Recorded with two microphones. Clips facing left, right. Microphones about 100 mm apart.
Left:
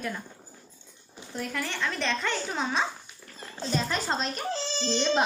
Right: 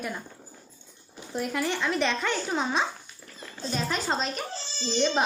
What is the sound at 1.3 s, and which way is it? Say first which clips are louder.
A child's voice: right 4 dB; 15° right (ahead or behind).